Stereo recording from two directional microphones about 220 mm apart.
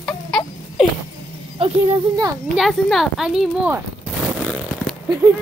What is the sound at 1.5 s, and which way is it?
Speech, 25° right (ahead or behind).